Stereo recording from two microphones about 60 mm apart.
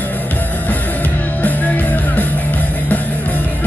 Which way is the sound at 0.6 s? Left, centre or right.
Left.